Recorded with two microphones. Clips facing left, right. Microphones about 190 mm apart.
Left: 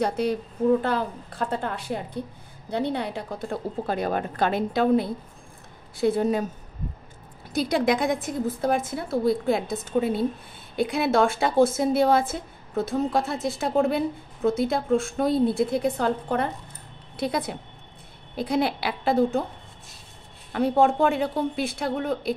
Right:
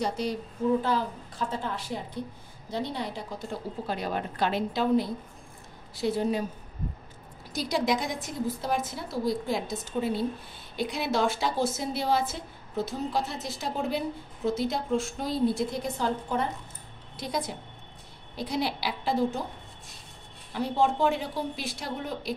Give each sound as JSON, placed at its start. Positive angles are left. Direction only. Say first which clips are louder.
{"t": 0.0, "sound": "a woman's voice", "louder": "left 5 dB", "side_deg": 60}
{"t": 7.5, "sound": "a woman's voice", "louder": "left 5 dB", "side_deg": 55}
{"t": 20.5, "sound": "a woman's voice", "louder": "left 6 dB", "side_deg": 55}